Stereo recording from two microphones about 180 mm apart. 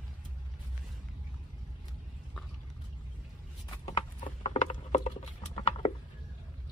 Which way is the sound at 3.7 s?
30° left (ahead or behind).